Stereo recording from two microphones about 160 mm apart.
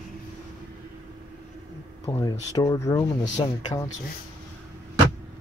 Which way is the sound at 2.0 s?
20° left (ahead or behind).